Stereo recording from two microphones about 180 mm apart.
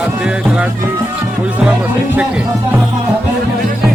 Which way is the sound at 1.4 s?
5° right (ahead or behind).